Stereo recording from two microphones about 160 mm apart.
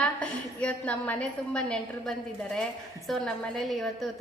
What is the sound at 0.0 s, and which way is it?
A woman's voice, 5° left (ahead or behind).